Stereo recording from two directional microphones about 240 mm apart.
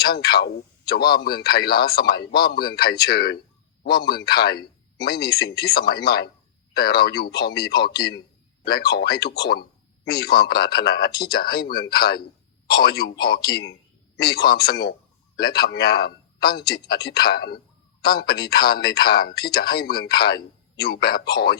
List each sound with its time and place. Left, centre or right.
0.0 s a man's voice: left